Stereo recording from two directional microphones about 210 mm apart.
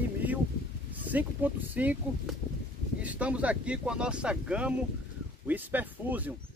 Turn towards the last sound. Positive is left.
turn(degrees=-10)  # may be behind; listen again after turning